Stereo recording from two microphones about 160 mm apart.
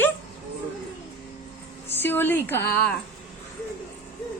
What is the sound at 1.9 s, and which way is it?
A woman's voice, 15° left (ahead or behind).